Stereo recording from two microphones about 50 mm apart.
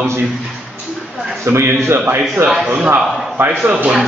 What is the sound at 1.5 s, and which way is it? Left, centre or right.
A man's voice, right.